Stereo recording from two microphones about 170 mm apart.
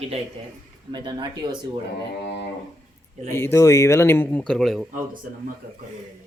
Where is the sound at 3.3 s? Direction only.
15° left (ahead or behind).